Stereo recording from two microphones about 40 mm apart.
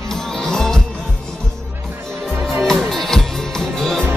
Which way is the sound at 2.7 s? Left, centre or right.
Centre.